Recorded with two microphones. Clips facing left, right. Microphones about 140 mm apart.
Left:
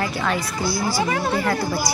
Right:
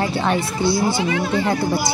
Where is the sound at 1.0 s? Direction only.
40° left (ahead or behind).